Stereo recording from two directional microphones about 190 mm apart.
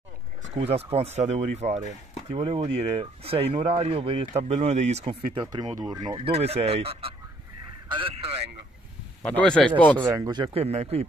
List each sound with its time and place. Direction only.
0.4 s speech: 35° right (ahead or behind)
9.2 s speech: 5° left (ahead or behind)
10.0 s speech: 15° right (ahead or behind); by 11.1 s 35° right (ahead or behind)